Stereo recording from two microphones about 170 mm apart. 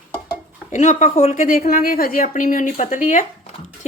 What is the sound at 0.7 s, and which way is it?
Speech, 45° left (ahead or behind).